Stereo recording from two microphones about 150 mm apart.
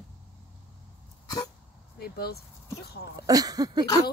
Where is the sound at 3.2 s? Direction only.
25° right (ahead or behind).